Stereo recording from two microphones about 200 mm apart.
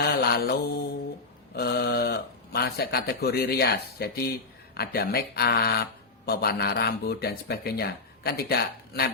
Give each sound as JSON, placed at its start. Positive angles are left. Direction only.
{"t": 0.0, "sound": "mantra", "side_deg": 50}
{"t": 1.5, "sound": "speech", "side_deg": 50}